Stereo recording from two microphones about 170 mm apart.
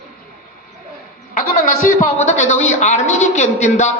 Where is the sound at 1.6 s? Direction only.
50° left (ahead or behind).